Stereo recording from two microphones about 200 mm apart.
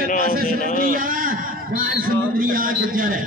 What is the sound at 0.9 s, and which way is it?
A man's voice, 45° right (ahead or behind).